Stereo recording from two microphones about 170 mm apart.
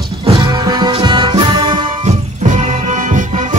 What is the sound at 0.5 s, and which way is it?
Music, 25° right (ahead or behind).